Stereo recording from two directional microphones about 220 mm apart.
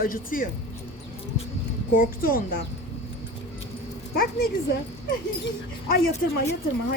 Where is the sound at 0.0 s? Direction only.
40° left (ahead or behind).